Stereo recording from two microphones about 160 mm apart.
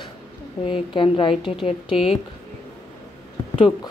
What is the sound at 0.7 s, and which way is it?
Speech, 30° left (ahead or behind).